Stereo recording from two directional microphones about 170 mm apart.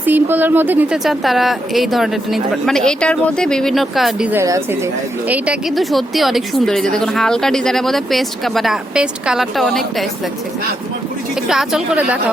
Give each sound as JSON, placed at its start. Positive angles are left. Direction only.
{"t": 0.0, "sound": "a woman's voice", "side_deg": -10}
{"t": 4.4, "sound": "speech", "side_deg": -15}
{"t": 5.3, "sound": "a woman's voice", "side_deg": -5}
{"t": 11.4, "sound": "a woman's voice", "side_deg": -5}